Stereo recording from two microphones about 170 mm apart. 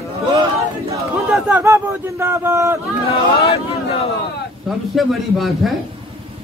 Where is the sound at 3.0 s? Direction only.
35° left (ahead or behind).